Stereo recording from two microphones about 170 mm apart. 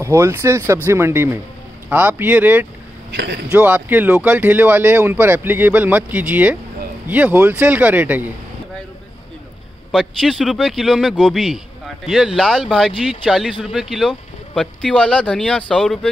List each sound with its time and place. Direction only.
0.0 s speech: 15° right (ahead or behind)
3.1 s speech: 90° right
3.4 s speech: 10° right (ahead or behind)
9.8 s speech: centre (ahead or behind)